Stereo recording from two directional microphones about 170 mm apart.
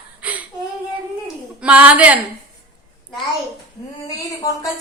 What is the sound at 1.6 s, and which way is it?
Speech, 5° right (ahead or behind).